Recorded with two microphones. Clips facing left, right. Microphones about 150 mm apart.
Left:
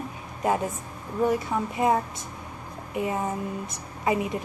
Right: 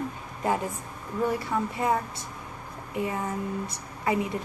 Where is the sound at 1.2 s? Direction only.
20° left (ahead or behind).